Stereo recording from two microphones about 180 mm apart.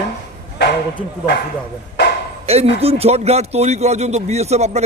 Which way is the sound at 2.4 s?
35° right (ahead or behind).